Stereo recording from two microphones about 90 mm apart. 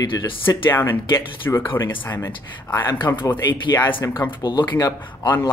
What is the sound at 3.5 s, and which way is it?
Speech, 50° left (ahead or behind).